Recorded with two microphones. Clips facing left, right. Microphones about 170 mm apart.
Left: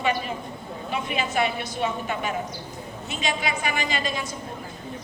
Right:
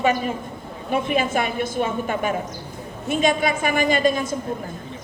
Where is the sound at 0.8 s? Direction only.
50° right (ahead or behind).